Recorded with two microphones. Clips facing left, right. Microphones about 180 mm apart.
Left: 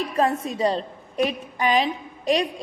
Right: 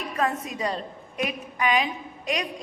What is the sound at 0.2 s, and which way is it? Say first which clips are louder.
A woman's voice: left 5 dB; 30° left (ahead or behind).